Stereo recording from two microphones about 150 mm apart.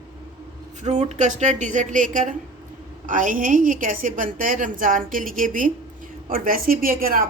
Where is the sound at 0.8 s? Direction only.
50° right (ahead or behind).